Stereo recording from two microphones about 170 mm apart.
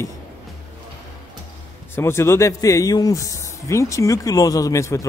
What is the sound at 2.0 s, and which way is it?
Speech, 15° left (ahead or behind).